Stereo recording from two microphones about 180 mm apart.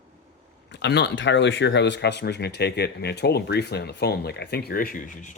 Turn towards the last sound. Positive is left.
turn(degrees=50)  # may be behind; listen again after turning